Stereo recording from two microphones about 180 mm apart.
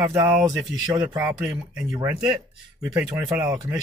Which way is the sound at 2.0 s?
20° right (ahead or behind).